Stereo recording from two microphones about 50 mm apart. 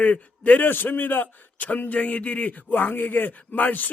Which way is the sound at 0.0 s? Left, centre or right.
Left.